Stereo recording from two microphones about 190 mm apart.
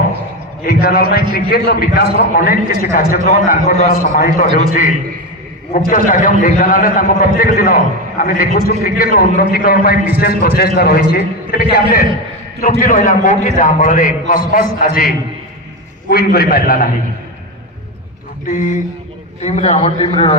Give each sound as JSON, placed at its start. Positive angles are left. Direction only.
{"t": 0.6, "sound": "a man's voice", "side_deg": 50}
{"t": 18.4, "sound": "a man's voice", "side_deg": 45}